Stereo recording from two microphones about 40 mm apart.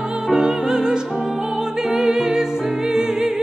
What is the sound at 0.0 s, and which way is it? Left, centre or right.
Music, centre.